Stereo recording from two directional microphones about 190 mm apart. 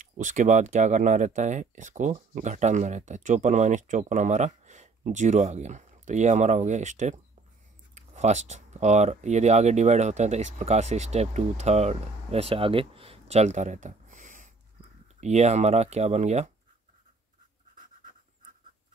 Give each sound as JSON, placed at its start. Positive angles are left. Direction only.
{"t": 0.0, "sound": "speech", "side_deg": -45}